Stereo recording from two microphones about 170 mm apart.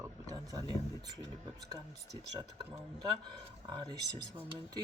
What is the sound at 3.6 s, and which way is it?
Speech, 25° right (ahead or behind).